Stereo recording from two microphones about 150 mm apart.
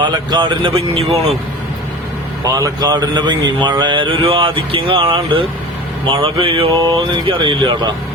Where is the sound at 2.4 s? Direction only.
25° right (ahead or behind).